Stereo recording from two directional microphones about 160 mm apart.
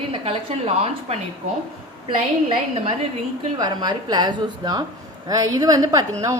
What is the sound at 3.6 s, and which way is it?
A woman's voice, 25° right (ahead or behind).